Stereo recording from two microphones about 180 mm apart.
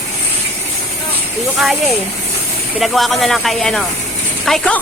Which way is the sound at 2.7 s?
Centre (ahead or behind).